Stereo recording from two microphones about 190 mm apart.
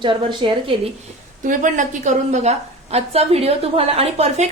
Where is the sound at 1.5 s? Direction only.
40° right (ahead or behind).